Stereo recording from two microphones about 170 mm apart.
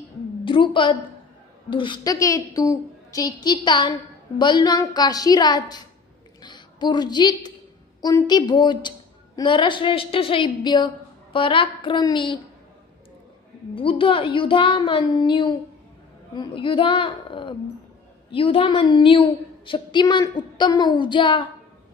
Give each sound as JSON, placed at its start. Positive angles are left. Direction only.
{"t": 0.5, "sound": "a woman's voice", "side_deg": 30}
{"t": 13.7, "sound": "a woman's voice", "side_deg": 30}